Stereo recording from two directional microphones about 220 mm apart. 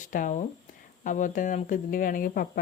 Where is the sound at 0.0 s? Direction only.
35° left (ahead or behind).